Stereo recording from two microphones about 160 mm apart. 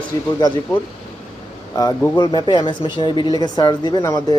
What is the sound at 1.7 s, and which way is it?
Speech, 25° left (ahead or behind).